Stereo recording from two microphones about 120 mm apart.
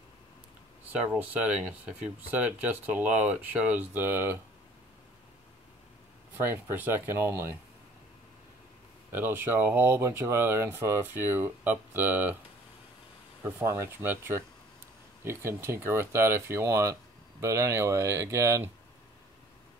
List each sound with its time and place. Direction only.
1.0 s speech: 10° right (ahead or behind)
6.4 s speech: 15° right (ahead or behind)
9.1 s speech: 15° right (ahead or behind)
13.4 s speech: 20° right (ahead or behind)